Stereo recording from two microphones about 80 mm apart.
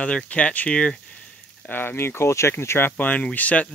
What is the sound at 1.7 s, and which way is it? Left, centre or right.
Speech, left.